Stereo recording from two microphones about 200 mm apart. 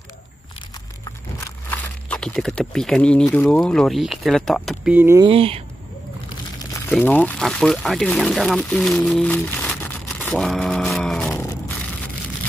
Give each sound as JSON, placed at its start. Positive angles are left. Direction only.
{"t": 1.7, "sound": "speech", "side_deg": 5}
{"t": 5.2, "sound": "speech", "side_deg": -30}
{"t": 6.9, "sound": "speech", "side_deg": 5}